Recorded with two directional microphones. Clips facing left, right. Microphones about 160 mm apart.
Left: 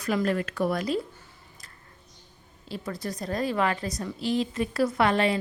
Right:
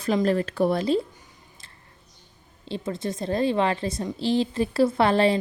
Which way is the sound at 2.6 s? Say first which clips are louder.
Right 4 dB; 25° right (ahead or behind).